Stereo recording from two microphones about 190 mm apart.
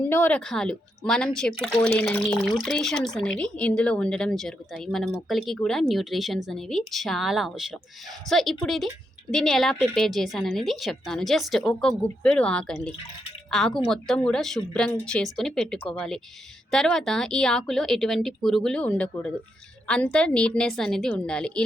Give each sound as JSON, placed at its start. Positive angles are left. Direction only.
{"t": 0.1, "sound": "speech", "side_deg": 10}